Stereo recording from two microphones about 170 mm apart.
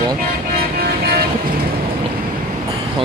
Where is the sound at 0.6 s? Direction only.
65° right (ahead or behind).